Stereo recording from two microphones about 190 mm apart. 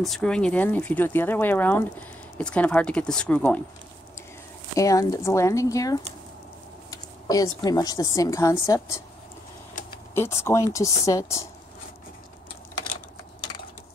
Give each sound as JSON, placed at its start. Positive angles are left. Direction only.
{"t": 0.0, "sound": "speech", "side_deg": 0}
{"t": 4.7, "sound": "a woman's voice", "side_deg": 15}
{"t": 10.1, "sound": "speech", "side_deg": 15}